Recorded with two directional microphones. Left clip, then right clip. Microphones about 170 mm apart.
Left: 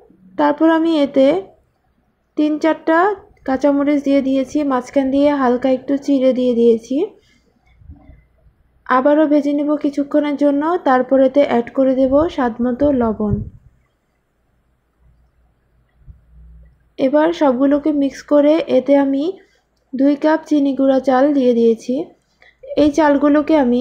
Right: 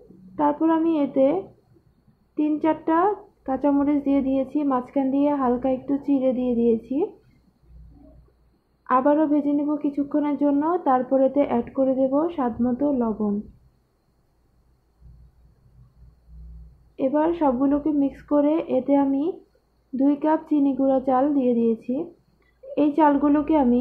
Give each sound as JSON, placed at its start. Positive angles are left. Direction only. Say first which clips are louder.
{"t": 0.4, "sound": "a woman's voice", "louder": "left 7 dB", "side_deg": 40}
{"t": 8.8, "sound": "a woman's voice", "louder": "left 6 dB", "side_deg": 35}
{"t": 16.9, "sound": "a woman's voice", "louder": "left 7 dB", "side_deg": 35}